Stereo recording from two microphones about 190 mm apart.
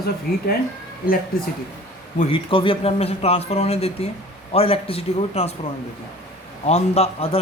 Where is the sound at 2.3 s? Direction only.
25° left (ahead or behind).